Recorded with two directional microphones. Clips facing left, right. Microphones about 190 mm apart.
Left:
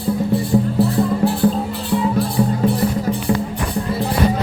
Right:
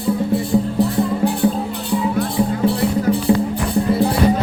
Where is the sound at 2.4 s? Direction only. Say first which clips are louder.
Left 1 dB; 10° right (ahead or behind).